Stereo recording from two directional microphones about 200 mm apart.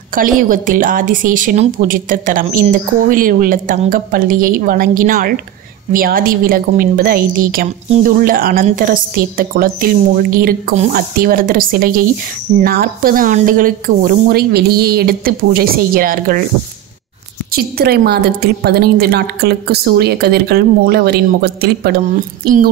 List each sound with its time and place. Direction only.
0.1 s a woman's voice: 45° right (ahead or behind)
17.5 s a woman's voice: 50° right (ahead or behind)